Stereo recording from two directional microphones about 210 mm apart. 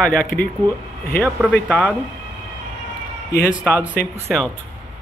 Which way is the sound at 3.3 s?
10° left (ahead or behind).